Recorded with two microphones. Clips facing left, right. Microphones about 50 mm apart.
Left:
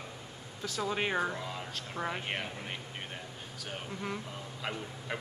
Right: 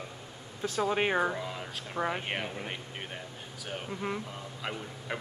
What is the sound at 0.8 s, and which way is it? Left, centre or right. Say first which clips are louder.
A man's voice: right 4 dB; centre.